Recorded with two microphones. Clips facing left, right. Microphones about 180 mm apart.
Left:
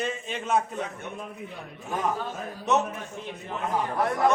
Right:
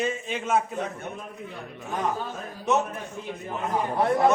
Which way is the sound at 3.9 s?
30° right (ahead or behind).